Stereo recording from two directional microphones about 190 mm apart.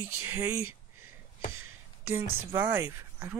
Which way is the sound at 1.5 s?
90° right.